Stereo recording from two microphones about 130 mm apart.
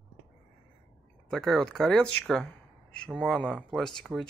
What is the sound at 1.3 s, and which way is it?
Speech, 5° left (ahead or behind).